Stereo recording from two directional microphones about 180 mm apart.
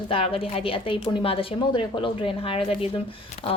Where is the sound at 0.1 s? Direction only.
30° left (ahead or behind).